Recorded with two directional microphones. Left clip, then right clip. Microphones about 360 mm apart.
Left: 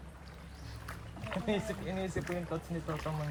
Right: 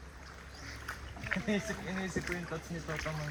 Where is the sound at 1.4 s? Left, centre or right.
Left.